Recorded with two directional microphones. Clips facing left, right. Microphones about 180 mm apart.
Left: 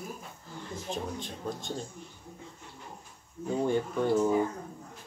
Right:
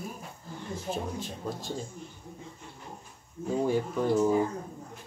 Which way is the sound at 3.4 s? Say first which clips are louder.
Right 1 dB; 5° right (ahead or behind).